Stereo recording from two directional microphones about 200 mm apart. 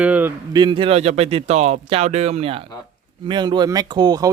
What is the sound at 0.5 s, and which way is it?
Speech, 25° right (ahead or behind).